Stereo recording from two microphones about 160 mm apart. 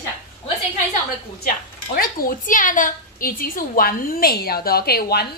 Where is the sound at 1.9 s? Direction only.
60° left (ahead or behind); by 5.3 s 75° left (ahead or behind).